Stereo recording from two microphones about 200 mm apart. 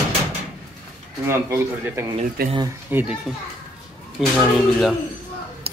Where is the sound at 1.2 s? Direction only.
10° right (ahead or behind).